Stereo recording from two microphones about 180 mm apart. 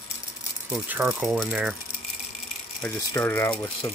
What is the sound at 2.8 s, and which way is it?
Speech, 10° left (ahead or behind).